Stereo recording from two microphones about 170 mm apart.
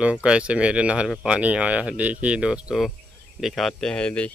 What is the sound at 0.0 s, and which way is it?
Speech, 5° right (ahead or behind).